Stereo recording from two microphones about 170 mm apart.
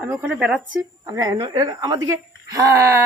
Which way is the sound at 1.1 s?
20° right (ahead or behind).